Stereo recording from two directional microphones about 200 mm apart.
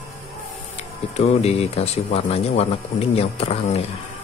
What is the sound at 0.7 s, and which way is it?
Speech, 30° left (ahead or behind).